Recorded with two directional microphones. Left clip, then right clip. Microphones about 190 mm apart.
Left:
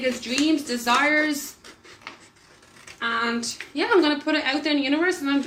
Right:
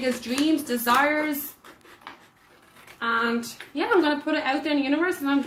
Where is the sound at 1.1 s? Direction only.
35° right (ahead or behind).